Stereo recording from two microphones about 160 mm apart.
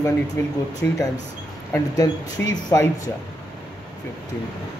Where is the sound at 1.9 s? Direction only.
25° left (ahead or behind).